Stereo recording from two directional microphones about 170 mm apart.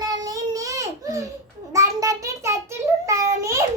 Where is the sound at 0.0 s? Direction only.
25° right (ahead or behind).